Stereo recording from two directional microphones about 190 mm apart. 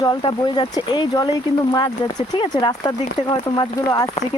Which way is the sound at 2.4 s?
25° left (ahead or behind).